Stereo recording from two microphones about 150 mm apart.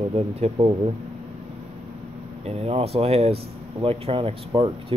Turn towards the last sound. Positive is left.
turn(degrees=-35)  # may be behind; listen again after turning